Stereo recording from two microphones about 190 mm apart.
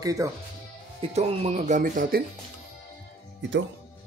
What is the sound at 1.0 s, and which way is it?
Speech, 35° right (ahead or behind).